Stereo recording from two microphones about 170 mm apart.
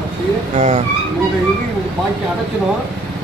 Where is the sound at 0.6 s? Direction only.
40° right (ahead or behind).